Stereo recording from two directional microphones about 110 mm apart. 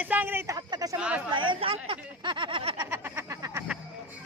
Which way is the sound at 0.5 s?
35° right (ahead or behind).